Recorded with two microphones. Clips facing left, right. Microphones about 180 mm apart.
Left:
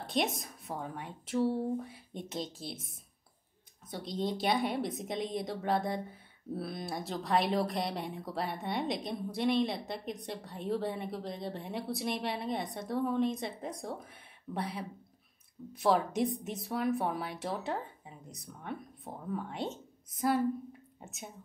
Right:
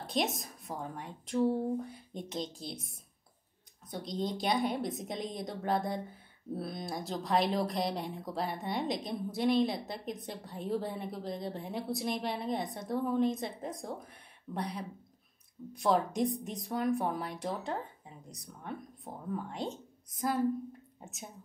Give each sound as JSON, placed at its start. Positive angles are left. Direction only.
{"t": 0.0, "sound": "a woman's voice", "side_deg": 0}